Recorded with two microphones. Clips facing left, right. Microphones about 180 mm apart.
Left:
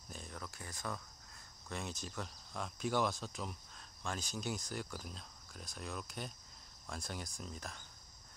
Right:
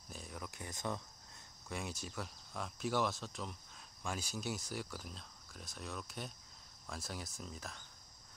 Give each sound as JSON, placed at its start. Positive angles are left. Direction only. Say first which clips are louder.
{"t": 0.1, "sound": "a sound", "louder": "right 1 dB", "side_deg": -5}
{"t": 1.7, "sound": "speech", "louder": "even", "side_deg": -10}
{"t": 4.0, "sound": "speech", "louder": "even", "side_deg": -10}